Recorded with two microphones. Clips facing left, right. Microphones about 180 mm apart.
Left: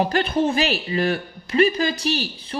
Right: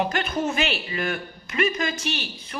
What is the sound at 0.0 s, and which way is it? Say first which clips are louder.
A woman's voice: left 5 dB; 35° left (ahead or behind).